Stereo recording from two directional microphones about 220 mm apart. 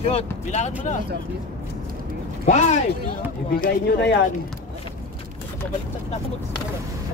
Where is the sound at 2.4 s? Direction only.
30° left (ahead or behind).